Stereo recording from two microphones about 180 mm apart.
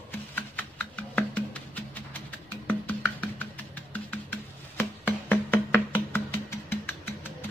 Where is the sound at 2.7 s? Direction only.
10° left (ahead or behind).